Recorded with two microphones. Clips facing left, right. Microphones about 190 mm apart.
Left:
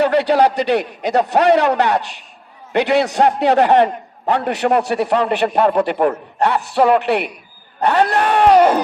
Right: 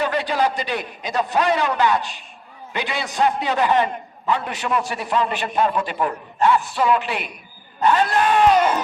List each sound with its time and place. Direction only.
0.0 s a man's voice: 65° left (ahead or behind)